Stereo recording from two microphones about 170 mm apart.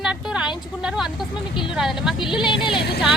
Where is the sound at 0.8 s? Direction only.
5° right (ahead or behind).